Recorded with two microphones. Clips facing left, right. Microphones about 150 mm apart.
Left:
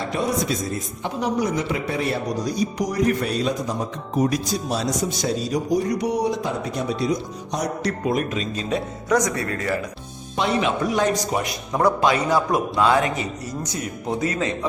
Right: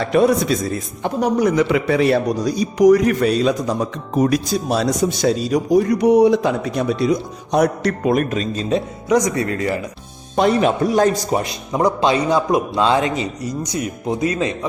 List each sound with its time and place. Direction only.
0.0 s speech: 70° right (ahead or behind)
1.0 s a man's voice: 55° right (ahead or behind); by 3.5 s 90° right
4.2 s a man's voice: 75° right (ahead or behind); by 8.4 s 55° right (ahead or behind)
9.0 s a man's voice: 10° right (ahead or behind)
10.3 s speech: 45° right (ahead or behind)
11.7 s a man's voice: 15° right (ahead or behind)